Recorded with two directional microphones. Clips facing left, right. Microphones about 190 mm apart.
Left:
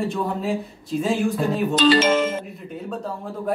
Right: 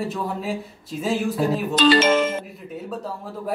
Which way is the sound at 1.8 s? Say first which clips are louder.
Even; 60° right (ahead or behind).